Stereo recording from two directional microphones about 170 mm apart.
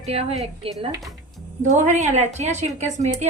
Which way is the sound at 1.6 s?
45° right (ahead or behind).